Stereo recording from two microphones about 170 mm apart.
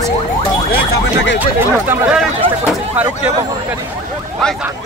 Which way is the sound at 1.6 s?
10° right (ahead or behind).